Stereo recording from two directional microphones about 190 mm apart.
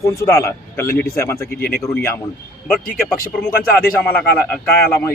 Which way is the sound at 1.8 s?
15° left (ahead or behind).